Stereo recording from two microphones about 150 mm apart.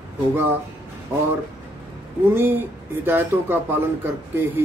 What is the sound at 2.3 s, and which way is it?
Speech, 15° right (ahead or behind).